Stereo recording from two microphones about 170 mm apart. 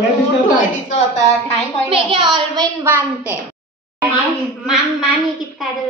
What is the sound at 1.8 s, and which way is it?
Speech, 30° right (ahead or behind).